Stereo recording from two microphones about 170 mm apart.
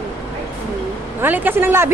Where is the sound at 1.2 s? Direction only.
10° right (ahead or behind).